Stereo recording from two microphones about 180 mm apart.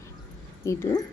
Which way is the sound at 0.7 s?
15° left (ahead or behind).